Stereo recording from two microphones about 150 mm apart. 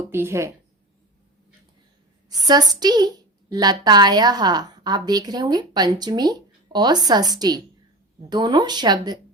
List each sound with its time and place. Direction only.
0.1 s speech: 15° right (ahead or behind)
2.3 s a woman's voice: 25° right (ahead or behind)